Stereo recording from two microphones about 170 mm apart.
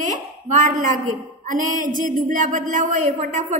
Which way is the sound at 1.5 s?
50° right (ahead or behind).